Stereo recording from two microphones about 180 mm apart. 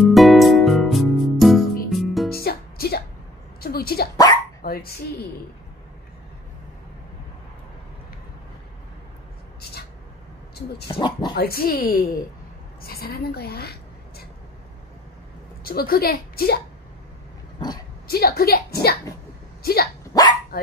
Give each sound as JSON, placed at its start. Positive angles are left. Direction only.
{"t": 0.0, "sound": "music", "side_deg": 0}
{"t": 2.2, "sound": "music", "side_deg": 60}
{"t": 3.6, "sound": "dog", "side_deg": 60}
{"t": 4.6, "sound": "a woman's voice", "side_deg": 55}
{"t": 10.9, "sound": "speech", "side_deg": 25}
{"t": 11.3, "sound": "a woman's voice", "side_deg": 60}
{"t": 15.6, "sound": "a woman's voice", "side_deg": 55}
{"t": 18.0, "sound": "a woman's voice", "side_deg": 60}
{"t": 20.1, "sound": "speech", "side_deg": 20}